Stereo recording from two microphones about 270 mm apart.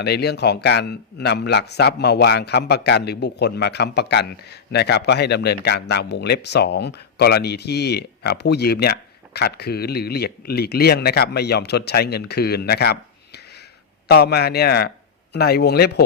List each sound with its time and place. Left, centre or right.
0.0 s a man's voice: left